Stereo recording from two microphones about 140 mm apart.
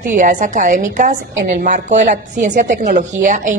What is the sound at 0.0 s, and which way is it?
A woman's voice, 65° right (ahead or behind).